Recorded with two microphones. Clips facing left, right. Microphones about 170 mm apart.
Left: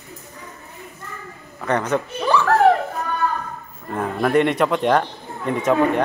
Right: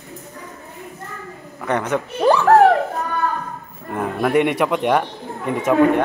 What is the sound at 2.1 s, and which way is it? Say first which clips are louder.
Speech: right 6 dB; 45° right (ahead or behind).